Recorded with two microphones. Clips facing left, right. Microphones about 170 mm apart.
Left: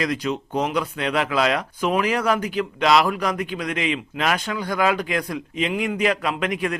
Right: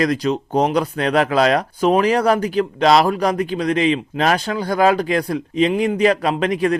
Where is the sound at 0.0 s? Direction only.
40° right (ahead or behind).